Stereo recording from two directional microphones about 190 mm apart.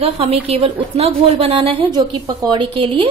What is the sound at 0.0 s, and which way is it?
A woman's voice, 30° right (ahead or behind).